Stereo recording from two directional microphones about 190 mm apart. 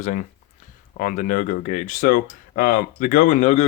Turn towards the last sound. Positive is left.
turn(degrees=35)  # may be behind; listen again after turning